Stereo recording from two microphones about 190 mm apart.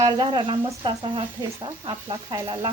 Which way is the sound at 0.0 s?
25° right (ahead or behind).